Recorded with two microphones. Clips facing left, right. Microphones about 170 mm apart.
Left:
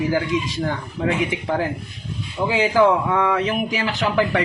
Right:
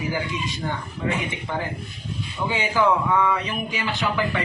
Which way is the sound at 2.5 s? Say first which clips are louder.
Left 5 dB; 90° left.